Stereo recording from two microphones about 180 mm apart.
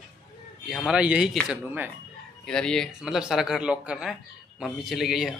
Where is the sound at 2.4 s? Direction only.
5° left (ahead or behind).